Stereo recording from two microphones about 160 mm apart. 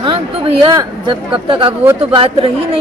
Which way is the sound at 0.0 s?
30° right (ahead or behind).